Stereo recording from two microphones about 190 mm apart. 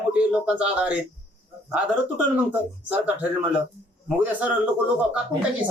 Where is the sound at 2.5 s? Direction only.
10° right (ahead or behind).